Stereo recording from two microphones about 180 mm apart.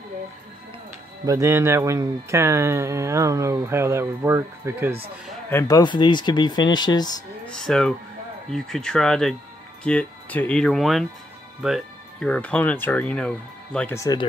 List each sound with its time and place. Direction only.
1.2 s speech: 15° right (ahead or behind)
5.5 s speech: 15° left (ahead or behind)
7.4 s speech: 5° left (ahead or behind)